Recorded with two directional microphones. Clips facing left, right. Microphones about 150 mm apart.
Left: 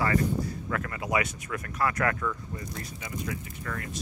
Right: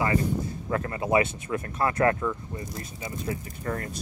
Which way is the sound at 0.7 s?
30° right (ahead or behind).